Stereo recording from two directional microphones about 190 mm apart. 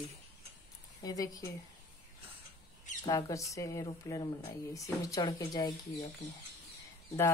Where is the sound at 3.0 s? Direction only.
15° left (ahead or behind).